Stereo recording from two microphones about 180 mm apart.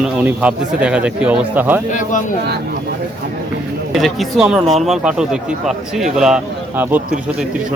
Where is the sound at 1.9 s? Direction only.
45° left (ahead or behind).